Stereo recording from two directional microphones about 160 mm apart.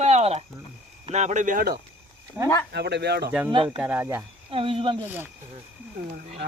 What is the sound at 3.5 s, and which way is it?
Speech, 30° right (ahead or behind).